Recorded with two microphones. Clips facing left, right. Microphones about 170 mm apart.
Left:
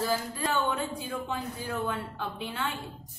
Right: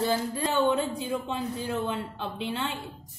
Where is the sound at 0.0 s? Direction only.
25° right (ahead or behind).